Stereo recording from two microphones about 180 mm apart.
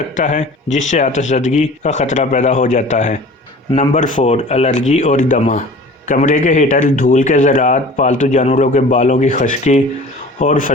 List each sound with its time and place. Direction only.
0.2 s a man's voice: 45° left (ahead or behind)